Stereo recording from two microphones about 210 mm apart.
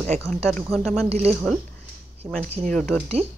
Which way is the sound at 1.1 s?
30° right (ahead or behind).